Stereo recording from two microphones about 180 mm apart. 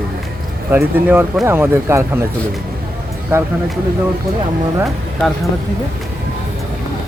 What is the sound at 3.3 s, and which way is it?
Speech, 10° right (ahead or behind).